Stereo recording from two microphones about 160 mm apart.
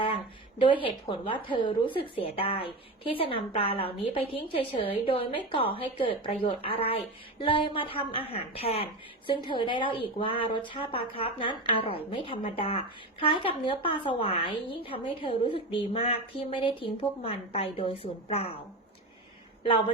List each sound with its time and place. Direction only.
0.6 s speech: 30° left (ahead or behind)